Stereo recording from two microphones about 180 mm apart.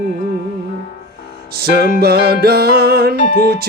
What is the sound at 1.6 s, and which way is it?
Music, 60° right (ahead or behind).